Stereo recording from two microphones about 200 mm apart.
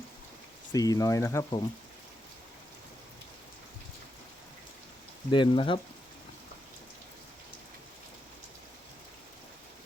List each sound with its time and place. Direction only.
0.7 s speech: 20° left (ahead or behind)
5.3 s speech: 25° left (ahead or behind)